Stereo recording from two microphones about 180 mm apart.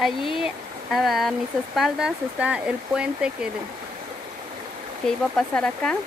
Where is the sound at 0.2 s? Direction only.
30° left (ahead or behind).